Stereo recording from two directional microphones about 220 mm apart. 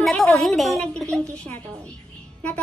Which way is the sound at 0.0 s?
Centre (ahead or behind).